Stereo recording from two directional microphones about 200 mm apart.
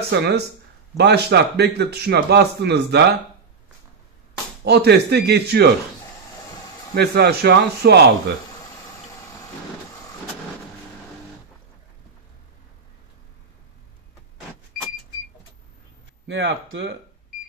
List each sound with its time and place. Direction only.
0.1 s a man's voice: 55° right (ahead or behind)
4.6 s a man's voice: 55° right (ahead or behind)
7.0 s a man's voice: 55° right (ahead or behind)
16.3 s speech: 70° right (ahead or behind)